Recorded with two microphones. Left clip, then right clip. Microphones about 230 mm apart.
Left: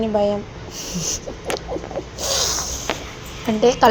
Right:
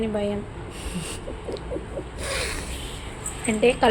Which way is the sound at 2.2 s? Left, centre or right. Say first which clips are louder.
Left 8 dB; centre.